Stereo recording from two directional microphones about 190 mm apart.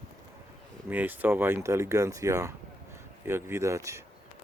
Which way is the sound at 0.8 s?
10° right (ahead or behind).